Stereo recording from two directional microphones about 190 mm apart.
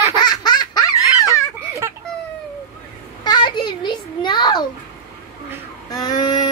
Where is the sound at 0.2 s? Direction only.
20° left (ahead or behind).